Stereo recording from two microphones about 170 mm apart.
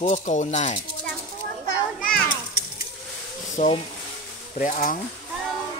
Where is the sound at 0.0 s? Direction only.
45° left (ahead or behind).